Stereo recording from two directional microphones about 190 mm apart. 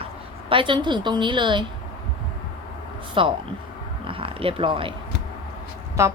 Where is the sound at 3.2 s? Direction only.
25° right (ahead or behind).